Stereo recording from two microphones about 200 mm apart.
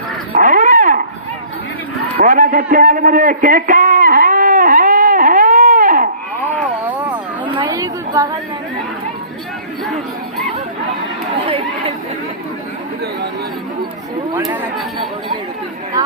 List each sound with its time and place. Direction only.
0.3 s dog: 40° right (ahead or behind)
2.1 s a sound: 40° right (ahead or behind)
6.7 s a sound: 10° right (ahead or behind)
7.4 s chatter: 25° right (ahead or behind)
9.8 s honk: centre (ahead or behind)
14.3 s chatter: 10° right (ahead or behind)